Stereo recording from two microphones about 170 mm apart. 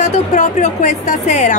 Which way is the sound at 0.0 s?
45° left (ahead or behind).